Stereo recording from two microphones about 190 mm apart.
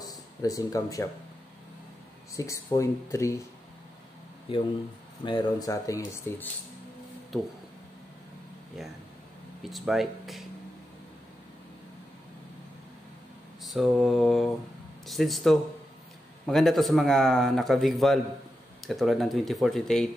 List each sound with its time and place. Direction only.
0.0 s a sound: 20° left (ahead or behind)
2.3 s speech: 15° left (ahead or behind)
5.2 s speech: 20° left (ahead or behind)
9.6 s a man's voice: centre (ahead or behind)
13.7 s a man's voice: centre (ahead or behind)